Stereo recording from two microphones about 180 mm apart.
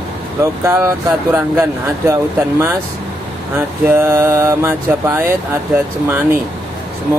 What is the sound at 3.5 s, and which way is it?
Speech, 15° right (ahead or behind).